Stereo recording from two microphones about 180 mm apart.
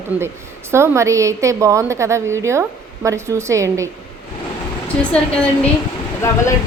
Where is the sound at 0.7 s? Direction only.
15° right (ahead or behind).